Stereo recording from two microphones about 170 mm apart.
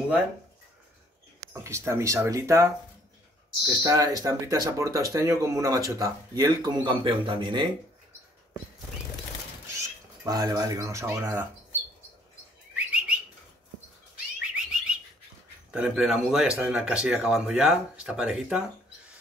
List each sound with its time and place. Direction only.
1.5 s speech: 15° right (ahead or behind)
10.2 s speech: 20° right (ahead or behind)
12.7 s bird: 5° right (ahead or behind)
14.4 s bird: 5° right (ahead or behind)
15.7 s speech: 5° right (ahead or behind)